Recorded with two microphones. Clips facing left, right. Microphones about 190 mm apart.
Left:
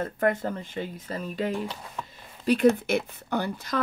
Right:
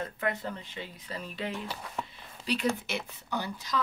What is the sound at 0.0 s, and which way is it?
Speech, 50° left (ahead or behind).